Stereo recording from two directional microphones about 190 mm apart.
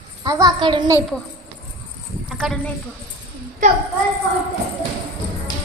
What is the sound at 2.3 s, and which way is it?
Speech, centre (ahead or behind).